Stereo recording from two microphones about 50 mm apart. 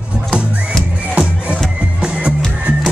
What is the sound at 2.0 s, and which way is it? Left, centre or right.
Music, centre.